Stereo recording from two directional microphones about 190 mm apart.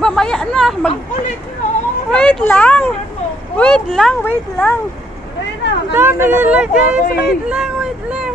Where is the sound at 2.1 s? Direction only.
5° left (ahead or behind).